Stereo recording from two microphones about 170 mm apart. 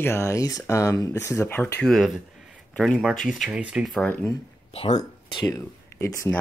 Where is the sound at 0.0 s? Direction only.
15° left (ahead or behind); by 4.1 s centre (ahead or behind).